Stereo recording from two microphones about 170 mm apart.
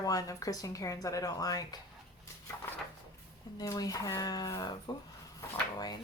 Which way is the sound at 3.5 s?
20° left (ahead or behind).